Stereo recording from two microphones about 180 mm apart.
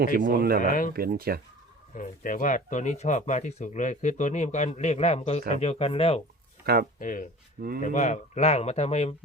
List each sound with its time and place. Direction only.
0.0 s speech: 50° right (ahead or behind)
0.6 s speech: 50° left (ahead or behind)
0.9 s speech: 55° right (ahead or behind)
2.0 s speech: 45° left (ahead or behind)
6.7 s speech: 60° right (ahead or behind)
7.0 s speech: 50° left (ahead or behind)